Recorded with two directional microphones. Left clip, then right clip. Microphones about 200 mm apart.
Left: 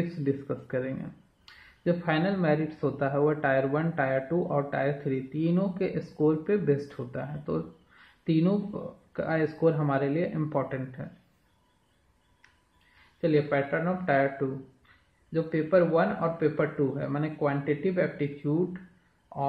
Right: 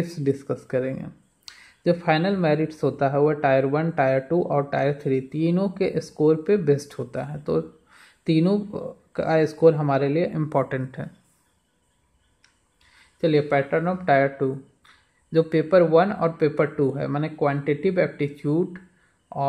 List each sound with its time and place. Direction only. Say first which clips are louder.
0.2 s speech: right 7 dB; 40° right (ahead or behind)
13.2 s speech: right 5 dB; 45° right (ahead or behind)